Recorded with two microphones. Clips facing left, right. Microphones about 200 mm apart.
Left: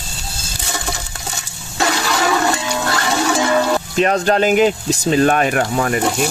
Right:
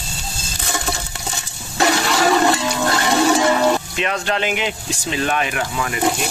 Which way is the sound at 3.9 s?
40° left (ahead or behind).